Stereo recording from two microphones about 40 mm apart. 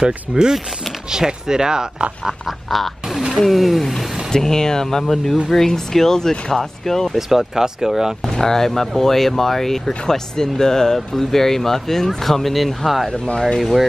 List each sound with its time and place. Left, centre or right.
0.3 s speech: centre
2.4 s duck: centre
3.3 s speech: centre
3.9 s speech: centre
7.2 s speech: centre
8.4 s speech: centre